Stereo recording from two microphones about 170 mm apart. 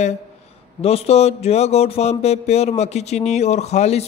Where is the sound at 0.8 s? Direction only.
35° left (ahead or behind).